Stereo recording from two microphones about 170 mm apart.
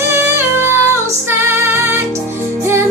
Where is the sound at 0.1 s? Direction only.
15° right (ahead or behind).